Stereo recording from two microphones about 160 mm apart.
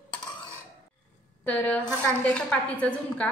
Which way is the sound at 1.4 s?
10° left (ahead or behind).